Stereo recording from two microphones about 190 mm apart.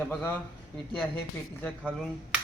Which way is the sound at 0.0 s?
5° left (ahead or behind).